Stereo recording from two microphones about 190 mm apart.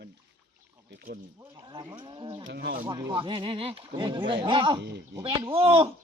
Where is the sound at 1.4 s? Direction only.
20° right (ahead or behind).